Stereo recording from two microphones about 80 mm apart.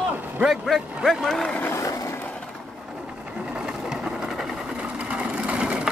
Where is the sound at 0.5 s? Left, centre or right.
Centre.